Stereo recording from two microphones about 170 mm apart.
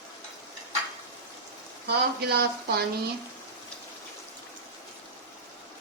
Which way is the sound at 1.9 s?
70° right (ahead or behind).